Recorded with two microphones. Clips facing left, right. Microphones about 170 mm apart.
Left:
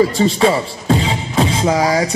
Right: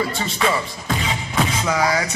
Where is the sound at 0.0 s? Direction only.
35° left (ahead or behind).